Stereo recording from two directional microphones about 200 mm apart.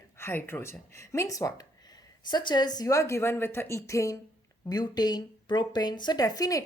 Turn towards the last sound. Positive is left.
turn(degrees=15)  # may be behind; listen again after turning